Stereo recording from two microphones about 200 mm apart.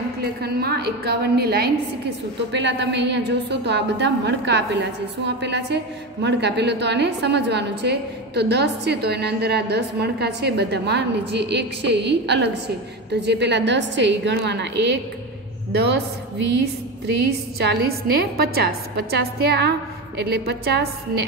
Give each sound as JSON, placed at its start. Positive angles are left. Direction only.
{"t": 0.2, "sound": "a woman's voice", "side_deg": -55}
{"t": 17.1, "sound": "a woman's voice", "side_deg": -55}